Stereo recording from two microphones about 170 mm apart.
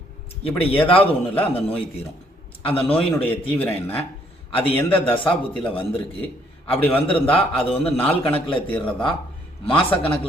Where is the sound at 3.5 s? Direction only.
10° left (ahead or behind).